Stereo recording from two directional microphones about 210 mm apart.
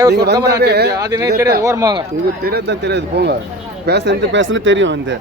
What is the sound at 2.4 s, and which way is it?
Speech, 50° right (ahead or behind).